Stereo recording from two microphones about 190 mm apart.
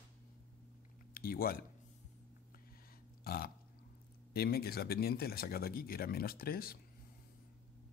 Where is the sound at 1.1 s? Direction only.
50° left (ahead or behind).